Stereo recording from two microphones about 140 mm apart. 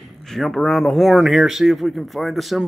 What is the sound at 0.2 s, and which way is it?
Speech, centre (ahead or behind).